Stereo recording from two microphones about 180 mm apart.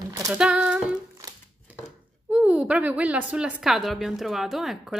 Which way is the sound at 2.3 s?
5° right (ahead or behind).